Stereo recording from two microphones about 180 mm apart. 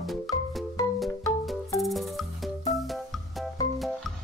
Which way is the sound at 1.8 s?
Centre (ahead or behind).